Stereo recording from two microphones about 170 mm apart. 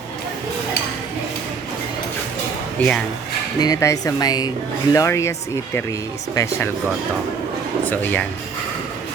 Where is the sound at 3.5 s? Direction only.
20° left (ahead or behind).